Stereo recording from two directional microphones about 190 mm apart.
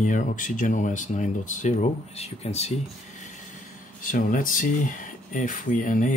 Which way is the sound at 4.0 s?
45° left (ahead or behind).